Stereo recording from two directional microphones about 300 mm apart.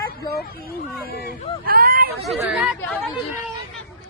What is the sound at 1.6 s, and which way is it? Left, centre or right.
Vehicle, right.